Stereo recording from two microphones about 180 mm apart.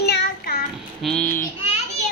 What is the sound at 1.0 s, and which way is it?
Speech, 5° left (ahead or behind).